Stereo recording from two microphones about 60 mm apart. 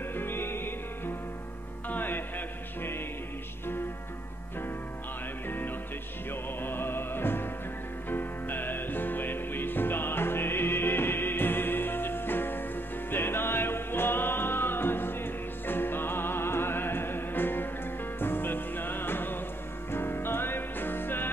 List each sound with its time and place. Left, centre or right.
0.1 s music: left
6.6 s music: left